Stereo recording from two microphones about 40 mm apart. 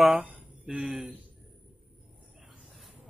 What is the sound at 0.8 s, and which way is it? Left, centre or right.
Speech, right.